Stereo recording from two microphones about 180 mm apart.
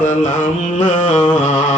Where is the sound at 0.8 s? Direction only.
45° left (ahead or behind).